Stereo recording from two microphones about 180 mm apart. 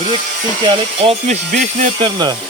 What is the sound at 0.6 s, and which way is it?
Speech, 30° right (ahead or behind).